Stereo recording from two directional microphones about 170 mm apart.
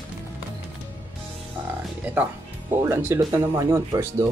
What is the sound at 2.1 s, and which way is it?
Music, 10° right (ahead or behind).